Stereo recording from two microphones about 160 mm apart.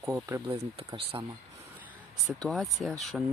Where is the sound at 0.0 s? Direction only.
20° right (ahead or behind).